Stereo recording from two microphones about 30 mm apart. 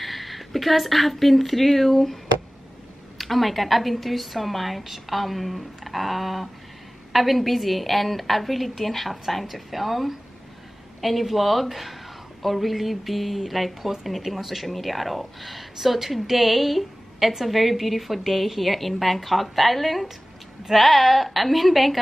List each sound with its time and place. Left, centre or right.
0.0 s speech: centre
3.2 s speech: centre